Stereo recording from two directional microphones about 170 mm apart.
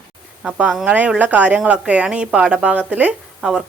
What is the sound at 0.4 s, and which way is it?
A woman's voice, 5° right (ahead or behind).